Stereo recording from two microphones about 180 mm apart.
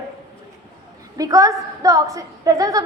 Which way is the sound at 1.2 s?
20° right (ahead or behind).